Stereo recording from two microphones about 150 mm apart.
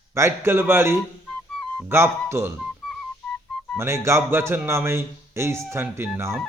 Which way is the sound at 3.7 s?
15° right (ahead or behind).